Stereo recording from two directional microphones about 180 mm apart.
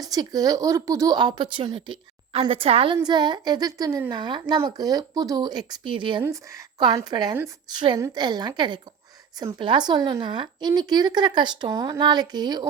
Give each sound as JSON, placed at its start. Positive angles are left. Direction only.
{"t": 0.0, "sound": "speech", "side_deg": -20}